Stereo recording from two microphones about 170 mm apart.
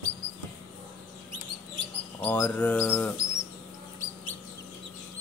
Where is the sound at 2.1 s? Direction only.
10° left (ahead or behind).